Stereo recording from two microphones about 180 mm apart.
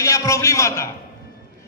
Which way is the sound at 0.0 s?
15° left (ahead or behind).